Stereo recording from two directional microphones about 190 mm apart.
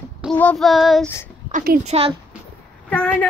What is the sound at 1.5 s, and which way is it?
Speech, 50° right (ahead or behind).